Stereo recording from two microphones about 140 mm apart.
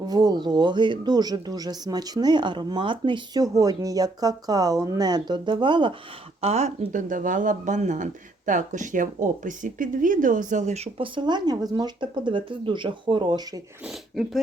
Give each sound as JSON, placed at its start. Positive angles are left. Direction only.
{"t": 0.1, "sound": "speech", "side_deg": -30}
{"t": 6.4, "sound": "speech", "side_deg": -50}